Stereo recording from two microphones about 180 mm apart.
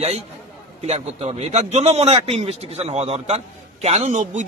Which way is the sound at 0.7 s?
35° right (ahead or behind).